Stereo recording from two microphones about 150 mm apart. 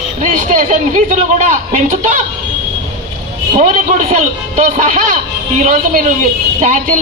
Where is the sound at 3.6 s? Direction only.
55° right (ahead or behind).